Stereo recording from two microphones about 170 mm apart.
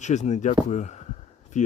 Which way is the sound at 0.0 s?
45° left (ahead or behind).